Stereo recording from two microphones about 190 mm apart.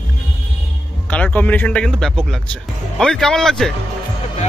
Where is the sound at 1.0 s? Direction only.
10° left (ahead or behind).